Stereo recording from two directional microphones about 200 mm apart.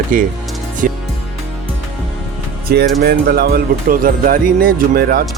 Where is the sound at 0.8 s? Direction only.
40° right (ahead or behind).